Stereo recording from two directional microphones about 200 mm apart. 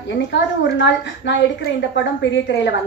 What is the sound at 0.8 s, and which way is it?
A woman's voice, 60° left (ahead or behind).